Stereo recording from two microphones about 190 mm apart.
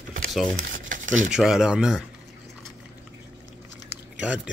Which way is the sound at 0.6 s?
45° right (ahead or behind).